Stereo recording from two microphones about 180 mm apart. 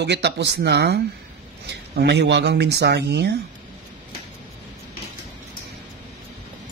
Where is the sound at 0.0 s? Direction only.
70° right (ahead or behind).